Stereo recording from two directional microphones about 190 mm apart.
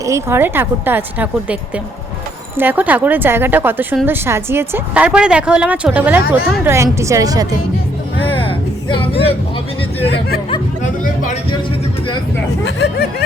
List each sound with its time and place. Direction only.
0.0 s speech: 15° right (ahead or behind)
2.6 s speech: 10° right (ahead or behind)
8.4 s a sound: 30° left (ahead or behind)
10.1 s speech: 55° left (ahead or behind)
12.6 s speech: 60° left (ahead or behind)